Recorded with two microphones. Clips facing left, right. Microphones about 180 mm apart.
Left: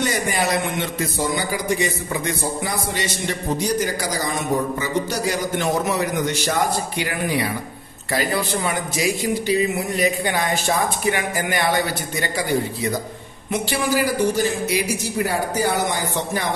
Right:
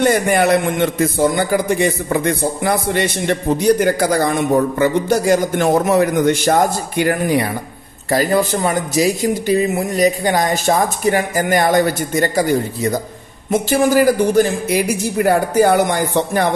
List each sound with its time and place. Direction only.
0.0 s a man's voice: 55° right (ahead or behind)
13.5 s a man's voice: 45° right (ahead or behind)